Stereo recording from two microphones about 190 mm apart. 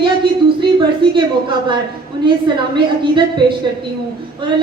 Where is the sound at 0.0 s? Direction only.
25° right (ahead or behind).